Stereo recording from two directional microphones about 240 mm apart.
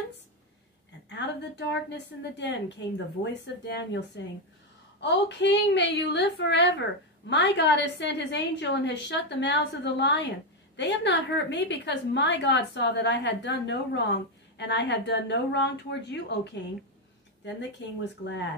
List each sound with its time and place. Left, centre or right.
1.0 s a woman's voice: left
5.0 s a woman's voice: left
17.8 s a woman's voice: left